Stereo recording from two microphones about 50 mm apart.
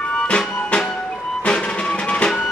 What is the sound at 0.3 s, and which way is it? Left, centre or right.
Music, left.